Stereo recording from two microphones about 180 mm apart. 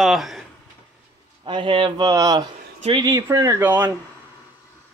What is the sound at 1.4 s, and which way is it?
Speech, 25° right (ahead or behind).